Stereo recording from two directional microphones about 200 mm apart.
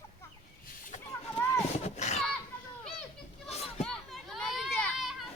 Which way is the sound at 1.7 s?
35° left (ahead or behind).